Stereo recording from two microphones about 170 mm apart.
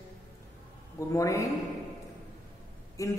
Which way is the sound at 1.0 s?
20° left (ahead or behind).